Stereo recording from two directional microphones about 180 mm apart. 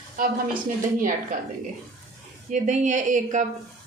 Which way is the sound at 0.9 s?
50° right (ahead or behind).